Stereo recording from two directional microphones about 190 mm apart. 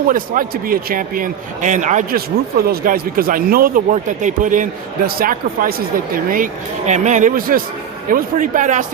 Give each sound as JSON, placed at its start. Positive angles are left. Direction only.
{"t": 0.1, "sound": "a man's voice", "side_deg": -50}